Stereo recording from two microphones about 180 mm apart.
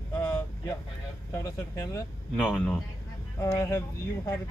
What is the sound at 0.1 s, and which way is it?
Vehicle, 15° left (ahead or behind).